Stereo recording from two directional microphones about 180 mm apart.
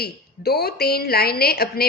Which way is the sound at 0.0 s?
60° left (ahead or behind).